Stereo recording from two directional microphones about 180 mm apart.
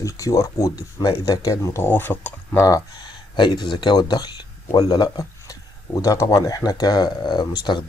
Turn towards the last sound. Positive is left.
turn(degrees=25)  # may be behind; listen again after turning